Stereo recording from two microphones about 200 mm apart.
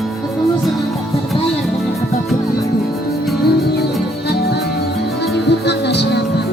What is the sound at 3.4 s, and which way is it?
Music, 50° left (ahead or behind).